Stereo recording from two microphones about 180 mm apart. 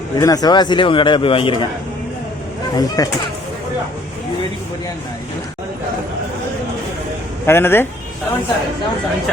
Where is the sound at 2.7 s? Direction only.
20° left (ahead or behind).